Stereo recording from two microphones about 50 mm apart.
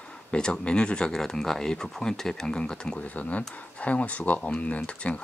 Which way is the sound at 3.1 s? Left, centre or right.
Left.